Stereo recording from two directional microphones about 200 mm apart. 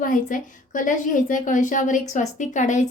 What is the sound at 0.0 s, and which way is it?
A woman's voice, 40° left (ahead or behind).